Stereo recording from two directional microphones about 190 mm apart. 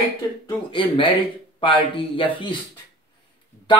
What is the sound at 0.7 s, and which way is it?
Speech, 25° left (ahead or behind).